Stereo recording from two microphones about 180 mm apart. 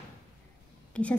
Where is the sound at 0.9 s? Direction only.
5° left (ahead or behind).